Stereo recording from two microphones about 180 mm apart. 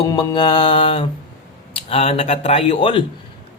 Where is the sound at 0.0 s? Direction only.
20° left (ahead or behind).